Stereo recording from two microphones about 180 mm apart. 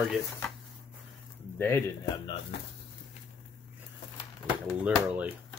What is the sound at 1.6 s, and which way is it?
Speech, 15° left (ahead or behind).